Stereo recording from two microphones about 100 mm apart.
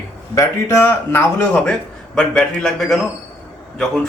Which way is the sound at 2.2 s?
5° left (ahead or behind).